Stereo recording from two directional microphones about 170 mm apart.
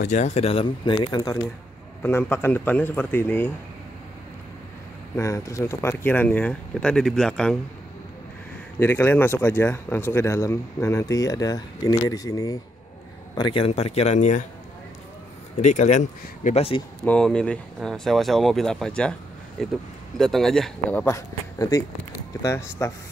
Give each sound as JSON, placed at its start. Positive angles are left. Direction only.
{"t": 0.0, "sound": "a man's voice", "side_deg": 45}
{"t": 5.1, "sound": "speech", "side_deg": 20}
{"t": 8.7, "sound": "a man's voice", "side_deg": 10}
{"t": 15.6, "sound": "speech", "side_deg": 45}
{"t": 17.0, "sound": "speech", "side_deg": 5}
{"t": 21.5, "sound": "speech", "side_deg": 20}